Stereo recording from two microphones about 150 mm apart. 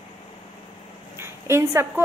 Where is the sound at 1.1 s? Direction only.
15° right (ahead or behind).